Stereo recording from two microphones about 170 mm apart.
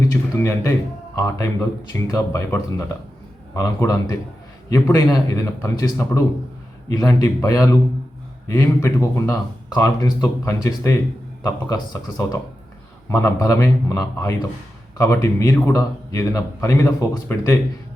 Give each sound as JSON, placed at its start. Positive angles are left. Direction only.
{"t": 0.0, "sound": "a man's voice", "side_deg": 15}